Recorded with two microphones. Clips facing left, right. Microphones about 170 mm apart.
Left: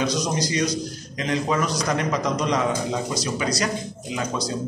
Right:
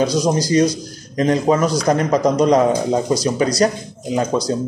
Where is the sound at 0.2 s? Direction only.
35° right (ahead or behind).